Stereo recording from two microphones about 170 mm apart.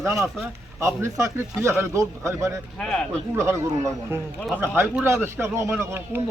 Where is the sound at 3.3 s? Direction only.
15° right (ahead or behind).